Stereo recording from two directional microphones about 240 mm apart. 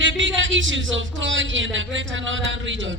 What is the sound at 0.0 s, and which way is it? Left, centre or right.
Speech, right.